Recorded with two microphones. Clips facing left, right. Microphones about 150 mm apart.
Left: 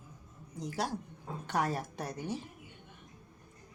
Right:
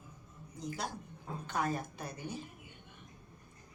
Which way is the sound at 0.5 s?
80° left.